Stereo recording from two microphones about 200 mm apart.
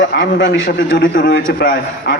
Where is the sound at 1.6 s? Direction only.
55° left (ahead or behind).